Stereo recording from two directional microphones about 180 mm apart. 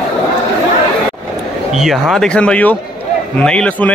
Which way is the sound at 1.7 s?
Centre (ahead or behind).